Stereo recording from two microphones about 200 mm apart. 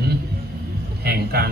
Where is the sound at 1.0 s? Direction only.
50° right (ahead or behind).